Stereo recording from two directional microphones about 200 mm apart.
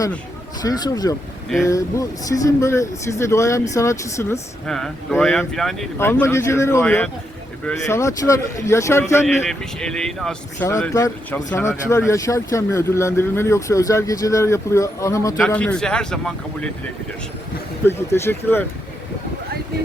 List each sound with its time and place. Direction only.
0.6 s speech: 20° left (ahead or behind)
4.6 s a man's voice: 5° left (ahead or behind)
6.0 s a man's voice: 10° left (ahead or behind)
10.7 s a man's voice: 15° left (ahead or behind)
17.8 s speech: 10° left (ahead or behind)